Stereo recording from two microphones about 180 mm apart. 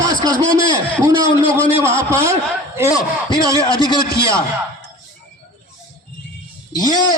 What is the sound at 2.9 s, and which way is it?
A man's voice, 25° left (ahead or behind).